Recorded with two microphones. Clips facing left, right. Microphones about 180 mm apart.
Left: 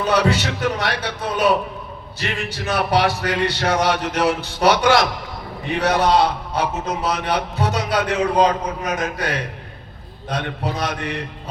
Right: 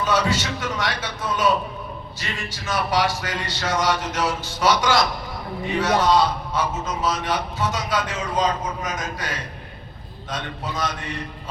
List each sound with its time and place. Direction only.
0.0 s a man's voice: 60° left (ahead or behind)